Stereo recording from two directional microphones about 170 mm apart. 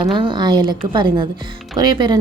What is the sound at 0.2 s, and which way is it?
Speech, 30° right (ahead or behind).